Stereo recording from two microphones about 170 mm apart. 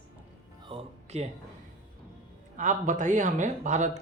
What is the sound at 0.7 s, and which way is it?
Music, 40° right (ahead or behind).